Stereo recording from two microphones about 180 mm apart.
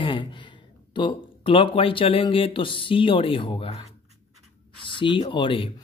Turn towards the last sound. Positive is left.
turn(degrees=30)  # may be behind; listen again after turning